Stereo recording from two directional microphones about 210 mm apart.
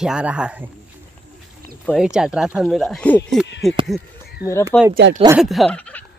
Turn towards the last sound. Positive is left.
turn(degrees=5)  # may be behind; listen again after turning